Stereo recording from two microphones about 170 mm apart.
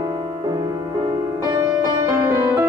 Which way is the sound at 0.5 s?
25° right (ahead or behind).